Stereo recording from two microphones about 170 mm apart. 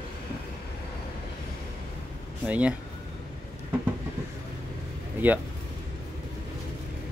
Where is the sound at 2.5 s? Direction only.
5° right (ahead or behind).